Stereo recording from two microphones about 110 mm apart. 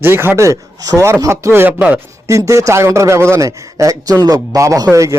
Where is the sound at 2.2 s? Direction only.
30° right (ahead or behind).